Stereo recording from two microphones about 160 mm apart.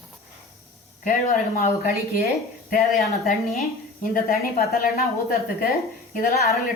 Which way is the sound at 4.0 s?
60° left (ahead or behind).